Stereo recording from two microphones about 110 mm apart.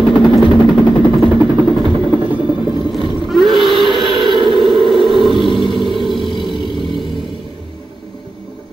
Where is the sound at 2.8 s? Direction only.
45° left (ahead or behind).